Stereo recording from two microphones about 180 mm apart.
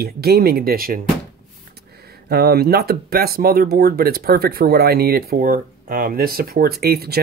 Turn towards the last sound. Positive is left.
turn(degrees=-60)  # may be behind; listen again after turning